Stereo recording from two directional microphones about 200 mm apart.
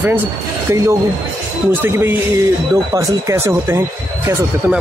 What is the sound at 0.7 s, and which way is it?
Speech, 15° right (ahead or behind).